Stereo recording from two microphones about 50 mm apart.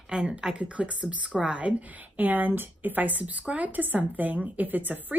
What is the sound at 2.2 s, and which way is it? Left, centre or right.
A woman's voice, right.